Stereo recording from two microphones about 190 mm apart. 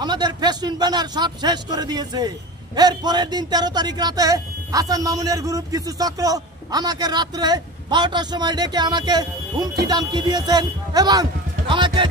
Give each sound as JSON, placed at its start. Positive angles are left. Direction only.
{"t": 0.0, "sound": "speech", "side_deg": -20}